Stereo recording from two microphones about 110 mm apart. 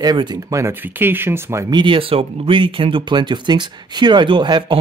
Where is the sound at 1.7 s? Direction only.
50° right (ahead or behind).